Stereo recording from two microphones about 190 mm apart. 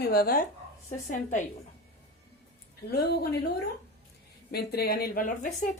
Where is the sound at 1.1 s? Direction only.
40° left (ahead or behind).